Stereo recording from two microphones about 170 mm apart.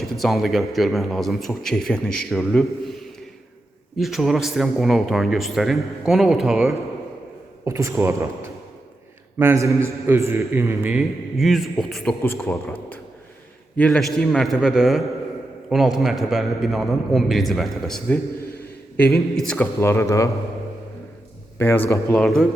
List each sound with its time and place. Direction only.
0.0 s a man's voice: centre (ahead or behind)
7.6 s a man's voice: 15° right (ahead or behind)
9.4 s a man's voice: 15° right (ahead or behind); by 12.7 s 10° left (ahead or behind)
13.7 s a man's voice: 5° left (ahead or behind)
19.8 s speech: 15° left (ahead or behind)
21.6 s speech: 15° left (ahead or behind)
22.2 s a man's voice: centre (ahead or behind)